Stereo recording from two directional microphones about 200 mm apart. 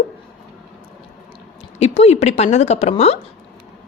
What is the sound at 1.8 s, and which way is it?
A woman's voice, 35° left (ahead or behind).